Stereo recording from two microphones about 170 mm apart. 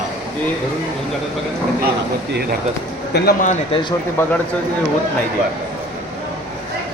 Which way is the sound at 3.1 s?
65° left (ahead or behind).